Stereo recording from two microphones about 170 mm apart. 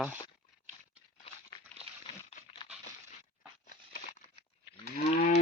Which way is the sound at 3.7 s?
45° left (ahead or behind).